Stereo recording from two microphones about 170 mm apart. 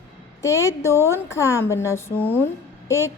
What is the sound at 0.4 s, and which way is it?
A woman's voice, 15° left (ahead or behind).